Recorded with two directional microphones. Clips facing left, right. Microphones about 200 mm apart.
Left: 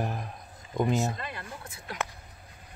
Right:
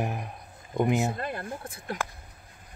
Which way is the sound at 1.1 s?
50° right (ahead or behind).